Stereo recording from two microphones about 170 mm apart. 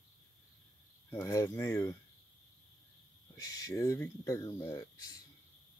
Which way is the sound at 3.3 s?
20° left (ahead or behind).